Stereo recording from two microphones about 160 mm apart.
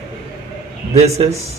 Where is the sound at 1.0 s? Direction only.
40° right (ahead or behind).